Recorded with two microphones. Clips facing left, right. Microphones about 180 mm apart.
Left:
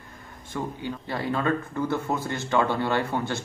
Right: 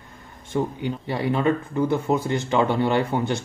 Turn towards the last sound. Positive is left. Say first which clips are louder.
# right 4 dB
turn(degrees=-20)  # may be behind; listen again after turning